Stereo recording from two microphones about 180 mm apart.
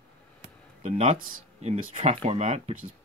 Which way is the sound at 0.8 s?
40° right (ahead or behind).